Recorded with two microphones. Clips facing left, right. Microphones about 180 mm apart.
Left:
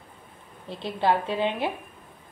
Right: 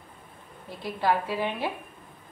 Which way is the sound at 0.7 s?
25° left (ahead or behind).